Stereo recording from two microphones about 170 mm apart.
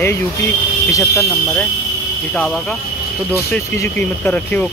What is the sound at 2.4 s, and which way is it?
Speech, 5° left (ahead or behind).